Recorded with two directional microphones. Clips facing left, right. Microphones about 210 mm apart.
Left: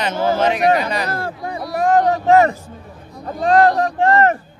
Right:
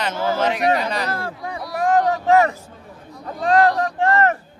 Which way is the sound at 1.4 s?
30° left (ahead or behind).